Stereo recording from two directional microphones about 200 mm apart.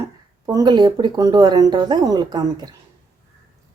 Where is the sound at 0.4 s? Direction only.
20° right (ahead or behind).